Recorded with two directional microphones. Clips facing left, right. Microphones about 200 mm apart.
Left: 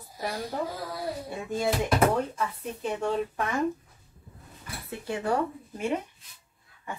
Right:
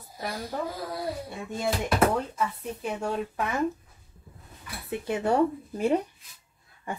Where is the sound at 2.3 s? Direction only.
5° right (ahead or behind).